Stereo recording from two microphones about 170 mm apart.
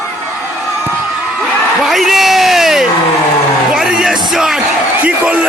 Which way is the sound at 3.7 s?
5° right (ahead or behind).